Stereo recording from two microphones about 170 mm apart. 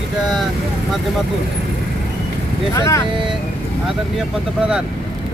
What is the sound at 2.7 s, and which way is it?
Speech, 15° left (ahead or behind).